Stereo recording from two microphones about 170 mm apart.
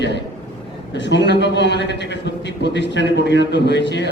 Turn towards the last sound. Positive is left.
turn(degrees=90)